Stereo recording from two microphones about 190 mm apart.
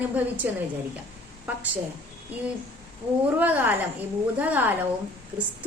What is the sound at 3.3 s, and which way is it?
A woman's voice, 10° right (ahead or behind).